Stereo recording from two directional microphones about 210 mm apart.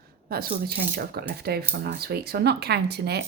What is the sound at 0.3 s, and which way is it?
Speech, 45° right (ahead or behind).